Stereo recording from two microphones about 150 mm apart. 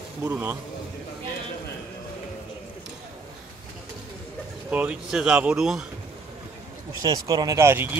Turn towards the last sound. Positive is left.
turn(degrees=-15)  # may be behind; listen again after turning